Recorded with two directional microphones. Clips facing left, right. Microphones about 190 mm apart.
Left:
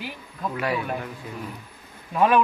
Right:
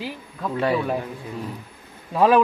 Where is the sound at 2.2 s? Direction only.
35° right (ahead or behind).